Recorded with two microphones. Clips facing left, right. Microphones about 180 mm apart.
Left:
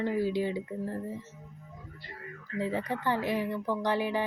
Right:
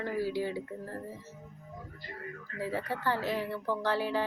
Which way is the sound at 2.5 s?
20° left (ahead or behind).